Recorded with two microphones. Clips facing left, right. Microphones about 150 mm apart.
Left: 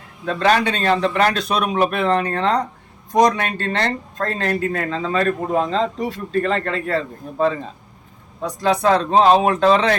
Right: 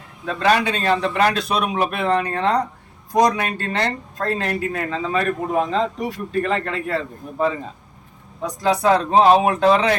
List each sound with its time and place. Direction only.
0.3 s speech: 5° right (ahead or behind)